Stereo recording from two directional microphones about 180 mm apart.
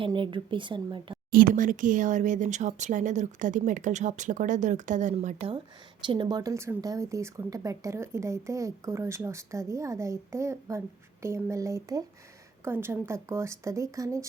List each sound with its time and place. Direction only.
0.0 s speech: 25° right (ahead or behind)
1.3 s a woman's voice: 50° right (ahead or behind); by 14.3 s 15° right (ahead or behind)